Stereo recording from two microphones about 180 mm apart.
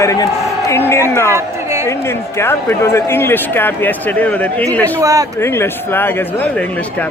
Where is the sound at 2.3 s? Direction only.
15° left (ahead or behind).